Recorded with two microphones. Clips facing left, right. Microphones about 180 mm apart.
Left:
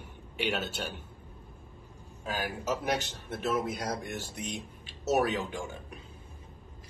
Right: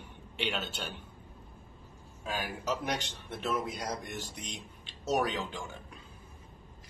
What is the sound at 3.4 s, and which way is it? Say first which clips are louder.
Speech: left 3 dB; 5° left (ahead or behind).